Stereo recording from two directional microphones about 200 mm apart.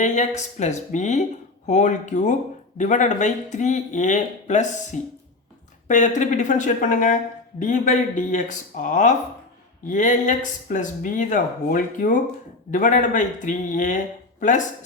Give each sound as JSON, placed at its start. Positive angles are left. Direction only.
{"t": 0.0, "sound": "speech", "side_deg": 35}